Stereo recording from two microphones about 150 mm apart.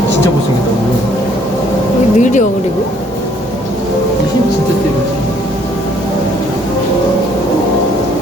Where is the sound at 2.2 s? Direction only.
55° left (ahead or behind).